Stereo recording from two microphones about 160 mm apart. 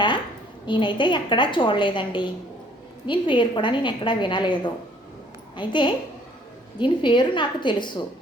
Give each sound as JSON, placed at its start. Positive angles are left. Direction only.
{"t": 0.6, "sound": "a woman's voice", "side_deg": 30}